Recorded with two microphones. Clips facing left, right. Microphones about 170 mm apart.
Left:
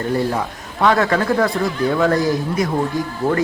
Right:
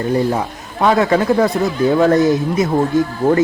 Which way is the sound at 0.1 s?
20° right (ahead or behind).